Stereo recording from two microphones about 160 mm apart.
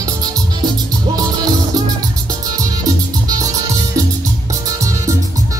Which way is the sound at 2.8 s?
20° right (ahead or behind).